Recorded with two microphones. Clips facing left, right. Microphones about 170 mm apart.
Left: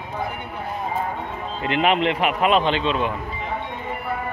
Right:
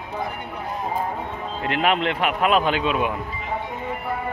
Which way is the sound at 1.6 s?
Centre (ahead or behind).